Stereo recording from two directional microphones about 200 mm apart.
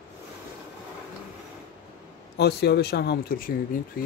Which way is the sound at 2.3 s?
55° left (ahead or behind).